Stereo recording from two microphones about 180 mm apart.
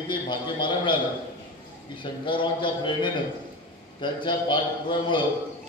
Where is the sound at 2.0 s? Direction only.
25° left (ahead or behind).